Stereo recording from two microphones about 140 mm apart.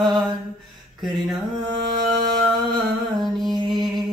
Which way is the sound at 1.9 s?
30° right (ahead or behind).